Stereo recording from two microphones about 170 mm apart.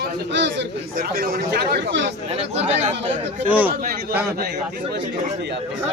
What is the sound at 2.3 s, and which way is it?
Speech, 40° right (ahead or behind).